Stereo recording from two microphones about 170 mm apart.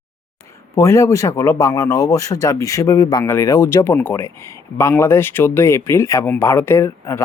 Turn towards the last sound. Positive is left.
turn(degrees=15)  # may be behind; listen again after turning